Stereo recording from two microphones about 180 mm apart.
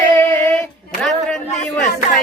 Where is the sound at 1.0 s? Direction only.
Centre (ahead or behind).